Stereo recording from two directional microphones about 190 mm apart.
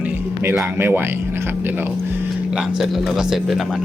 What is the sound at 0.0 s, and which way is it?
Speech, 5° right (ahead or behind).